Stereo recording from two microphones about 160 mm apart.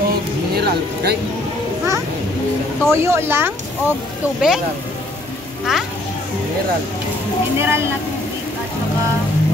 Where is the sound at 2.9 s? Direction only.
15° right (ahead or behind).